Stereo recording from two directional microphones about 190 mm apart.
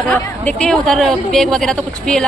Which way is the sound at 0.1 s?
5° left (ahead or behind).